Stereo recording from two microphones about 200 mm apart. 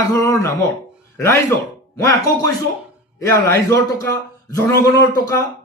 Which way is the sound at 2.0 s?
15° left (ahead or behind).